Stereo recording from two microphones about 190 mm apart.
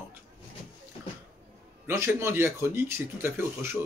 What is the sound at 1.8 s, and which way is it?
Speech, 15° right (ahead or behind).